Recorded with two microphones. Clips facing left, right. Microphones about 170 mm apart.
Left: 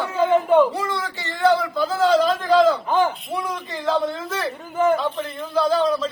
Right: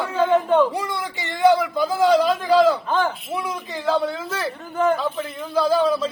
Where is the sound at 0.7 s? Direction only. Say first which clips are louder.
Left 1 dB; 15° right (ahead or behind).